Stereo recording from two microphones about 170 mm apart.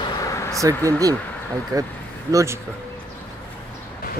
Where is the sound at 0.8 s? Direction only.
20° right (ahead or behind).